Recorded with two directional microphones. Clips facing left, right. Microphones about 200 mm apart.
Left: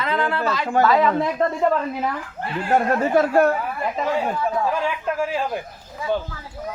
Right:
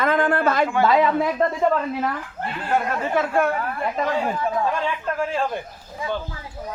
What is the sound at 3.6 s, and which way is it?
Speech, 5° left (ahead or behind).